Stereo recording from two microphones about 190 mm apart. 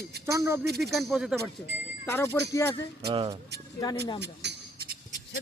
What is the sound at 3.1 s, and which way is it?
Speech, 25° right (ahead or behind).